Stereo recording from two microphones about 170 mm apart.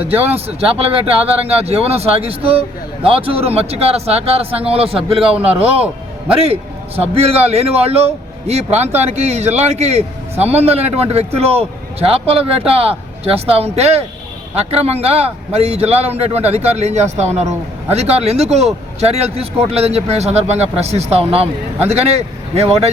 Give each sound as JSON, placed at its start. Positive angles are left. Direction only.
{"t": 0.1, "sound": "speech", "side_deg": -10}
{"t": 0.3, "sound": "a man's voice", "side_deg": -35}